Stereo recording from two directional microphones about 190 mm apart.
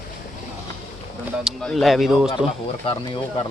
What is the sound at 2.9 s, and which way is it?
Speech, 30° left (ahead or behind).